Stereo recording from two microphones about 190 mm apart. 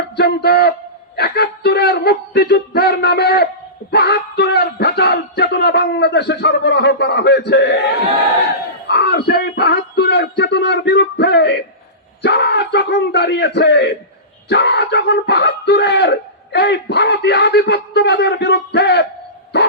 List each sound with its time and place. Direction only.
0.2 s speech: 60° left (ahead or behind)
8.9 s speech: 60° left (ahead or behind)
19.5 s dog: 60° left (ahead or behind)